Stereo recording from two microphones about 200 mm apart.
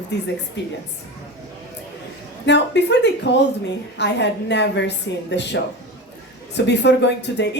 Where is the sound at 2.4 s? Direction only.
60° left (ahead or behind).